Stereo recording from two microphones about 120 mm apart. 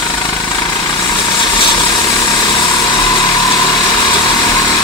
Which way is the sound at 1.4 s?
40° left (ahead or behind).